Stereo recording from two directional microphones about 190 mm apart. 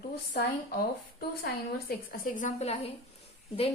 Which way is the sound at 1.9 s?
50° left (ahead or behind).